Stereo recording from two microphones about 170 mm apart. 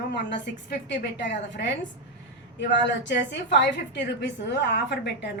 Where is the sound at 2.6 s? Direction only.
90° left.